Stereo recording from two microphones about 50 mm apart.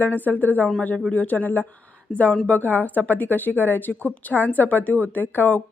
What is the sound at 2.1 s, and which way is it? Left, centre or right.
Speech, left.